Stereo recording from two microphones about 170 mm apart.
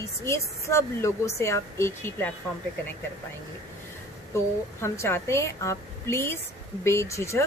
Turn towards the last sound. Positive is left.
turn(degrees=15)  # may be behind; listen again after turning